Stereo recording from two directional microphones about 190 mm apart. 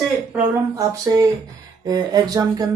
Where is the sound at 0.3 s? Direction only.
15° right (ahead or behind).